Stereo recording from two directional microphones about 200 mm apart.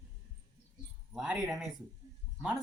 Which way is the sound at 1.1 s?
5° right (ahead or behind).